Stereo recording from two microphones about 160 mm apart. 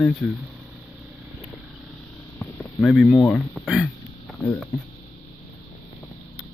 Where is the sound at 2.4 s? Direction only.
5° left (ahead or behind).